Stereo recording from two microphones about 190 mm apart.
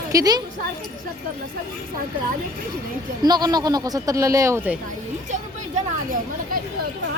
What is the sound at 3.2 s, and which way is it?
Speech, 20° right (ahead or behind).